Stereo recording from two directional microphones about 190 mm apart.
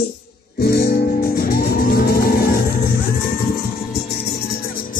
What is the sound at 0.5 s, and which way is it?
Music, 55° left (ahead or behind).